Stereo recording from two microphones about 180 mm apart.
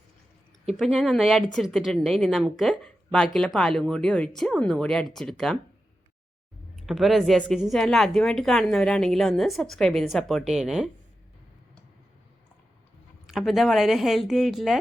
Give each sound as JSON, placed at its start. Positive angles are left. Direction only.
{"t": 0.7, "sound": "a woman's voice", "side_deg": 0}
{"t": 6.7, "sound": "a woman's voice", "side_deg": 0}
{"t": 13.2, "sound": "a woman's voice", "side_deg": 0}